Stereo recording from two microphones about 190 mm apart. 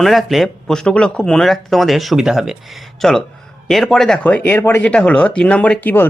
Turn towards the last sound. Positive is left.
turn(degrees=10)  # may be behind; listen again after turning